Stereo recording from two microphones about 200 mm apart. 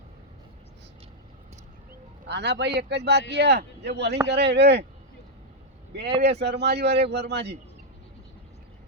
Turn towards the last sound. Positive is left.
turn(degrees=-55)  # may be behind; listen again after turning